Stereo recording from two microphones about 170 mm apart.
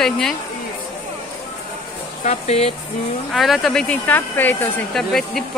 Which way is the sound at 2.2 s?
40° left (ahead or behind).